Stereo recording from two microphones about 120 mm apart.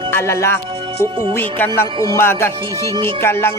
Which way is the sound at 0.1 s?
20° left (ahead or behind).